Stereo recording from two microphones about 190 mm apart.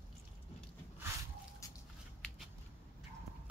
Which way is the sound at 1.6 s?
15° left (ahead or behind).